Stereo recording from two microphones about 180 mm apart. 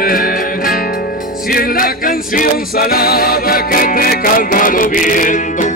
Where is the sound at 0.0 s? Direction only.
55° left (ahead or behind).